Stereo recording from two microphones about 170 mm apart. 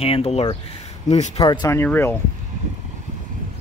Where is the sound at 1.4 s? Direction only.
25° left (ahead or behind).